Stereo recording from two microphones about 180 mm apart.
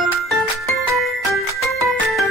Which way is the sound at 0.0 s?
Centre (ahead or behind).